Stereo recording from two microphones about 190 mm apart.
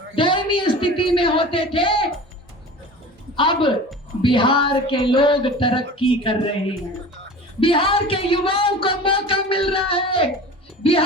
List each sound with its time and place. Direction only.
0.2 s speech: 25° left (ahead or behind)
3.3 s speech: 25° left (ahead or behind)
7.6 s speech: 30° left (ahead or behind)